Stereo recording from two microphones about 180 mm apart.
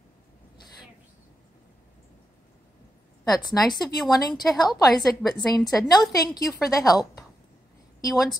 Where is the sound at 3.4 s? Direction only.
25° left (ahead or behind).